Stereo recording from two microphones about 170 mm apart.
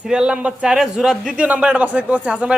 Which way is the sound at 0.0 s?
5° right (ahead or behind).